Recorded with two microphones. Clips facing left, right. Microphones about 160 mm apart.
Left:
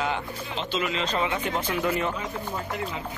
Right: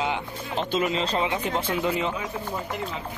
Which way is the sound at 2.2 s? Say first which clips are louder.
Right 1 dB; centre (ahead or behind).